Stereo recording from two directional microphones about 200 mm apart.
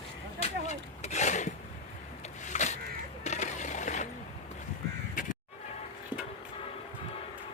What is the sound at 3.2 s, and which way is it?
Mechanisms, 35° left (ahead or behind).